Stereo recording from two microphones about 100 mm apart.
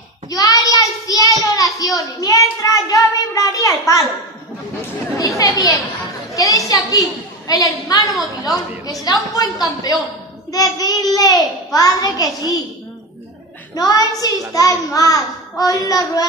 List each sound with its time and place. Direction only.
0.3 s child singing: 35° left (ahead or behind)
1.4 s a child's voice: 35° left (ahead or behind)
5.1 s a child's voice: 35° left (ahead or behind)
13.7 s a child's voice: 40° left (ahead or behind)